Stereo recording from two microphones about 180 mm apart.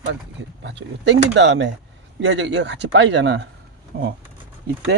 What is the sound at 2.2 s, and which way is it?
Speech, 90° right.